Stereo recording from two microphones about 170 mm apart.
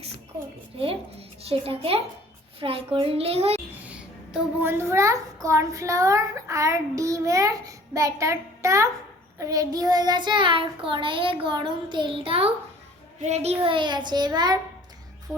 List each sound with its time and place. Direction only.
1.4 s a child's voice: 35° right (ahead or behind)
3.7 s a child's voice: 10° right (ahead or behind)
9.4 s child singing: 20° right (ahead or behind)
15.3 s music: 15° right (ahead or behind)